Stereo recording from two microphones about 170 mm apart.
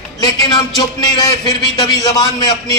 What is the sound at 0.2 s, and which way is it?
A man's voice, 25° left (ahead or behind).